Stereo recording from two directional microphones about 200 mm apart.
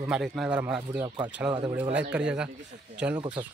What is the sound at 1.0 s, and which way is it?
Speech, 20° right (ahead or behind).